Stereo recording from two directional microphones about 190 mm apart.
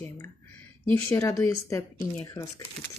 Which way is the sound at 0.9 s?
15° left (ahead or behind).